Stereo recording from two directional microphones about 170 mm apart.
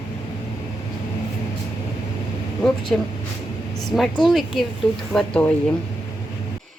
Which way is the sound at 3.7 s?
Centre (ahead or behind).